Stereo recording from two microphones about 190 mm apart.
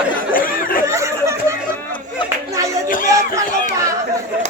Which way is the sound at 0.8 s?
15° right (ahead or behind).